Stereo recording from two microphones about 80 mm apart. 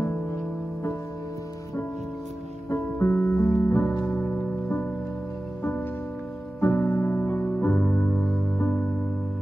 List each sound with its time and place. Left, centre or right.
2.7 s music: left
6.6 s music: left